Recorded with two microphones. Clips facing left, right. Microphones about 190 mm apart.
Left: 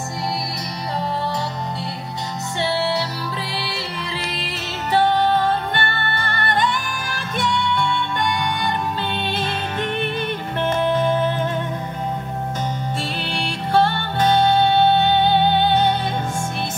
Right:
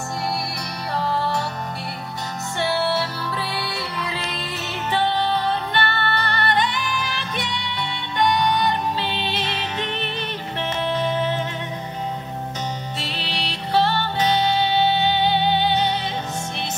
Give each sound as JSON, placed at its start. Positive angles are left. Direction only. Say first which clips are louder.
{"t": 2.6, "sound": "music", "louder": "even", "side_deg": 20}
{"t": 4.5, "sound": "music", "louder": "left 3 dB", "side_deg": 45}
{"t": 13.2, "sound": "music", "louder": "left 3 dB", "side_deg": 50}